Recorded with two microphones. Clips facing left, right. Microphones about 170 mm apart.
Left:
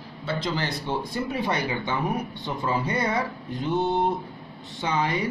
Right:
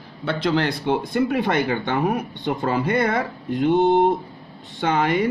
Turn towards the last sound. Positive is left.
turn(degrees=-60)  # may be behind; listen again after turning